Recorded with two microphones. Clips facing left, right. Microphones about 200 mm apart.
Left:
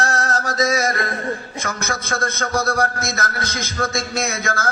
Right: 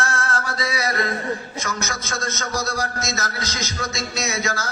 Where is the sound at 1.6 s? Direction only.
55° left (ahead or behind).